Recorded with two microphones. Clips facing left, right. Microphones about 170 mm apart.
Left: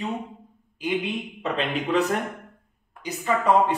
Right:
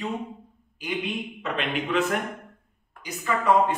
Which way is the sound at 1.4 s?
35° left (ahead or behind).